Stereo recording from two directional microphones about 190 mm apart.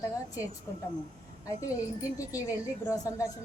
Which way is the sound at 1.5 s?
15° left (ahead or behind).